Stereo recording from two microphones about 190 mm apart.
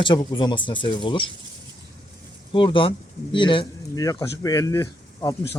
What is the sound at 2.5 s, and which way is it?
Speech, 25° left (ahead or behind).